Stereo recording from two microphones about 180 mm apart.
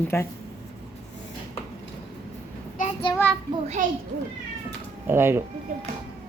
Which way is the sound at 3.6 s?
40° right (ahead or behind).